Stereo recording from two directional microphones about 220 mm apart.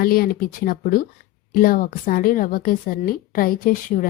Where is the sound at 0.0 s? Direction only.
40° left (ahead or behind).